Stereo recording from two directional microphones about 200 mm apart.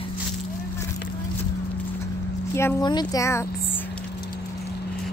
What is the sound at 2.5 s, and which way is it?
Speech, 15° left (ahead or behind).